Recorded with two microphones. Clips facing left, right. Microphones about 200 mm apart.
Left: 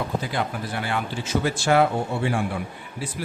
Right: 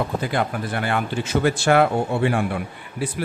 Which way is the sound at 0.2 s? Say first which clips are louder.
Right 4 dB; 55° right (ahead or behind).